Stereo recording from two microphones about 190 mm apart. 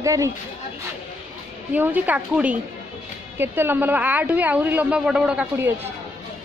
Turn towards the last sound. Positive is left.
turn(degrees=-10)  # may be behind; listen again after turning